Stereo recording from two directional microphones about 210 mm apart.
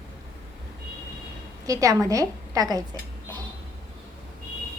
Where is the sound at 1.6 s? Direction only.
15° right (ahead or behind).